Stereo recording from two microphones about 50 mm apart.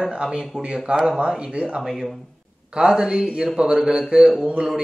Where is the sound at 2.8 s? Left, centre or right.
Centre.